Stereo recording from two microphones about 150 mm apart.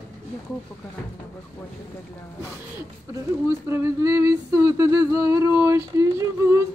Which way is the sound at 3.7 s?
20° right (ahead or behind).